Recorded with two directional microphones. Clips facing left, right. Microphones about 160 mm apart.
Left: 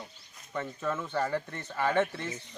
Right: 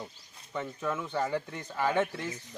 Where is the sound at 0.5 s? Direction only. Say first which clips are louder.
Even; 10° right (ahead or behind).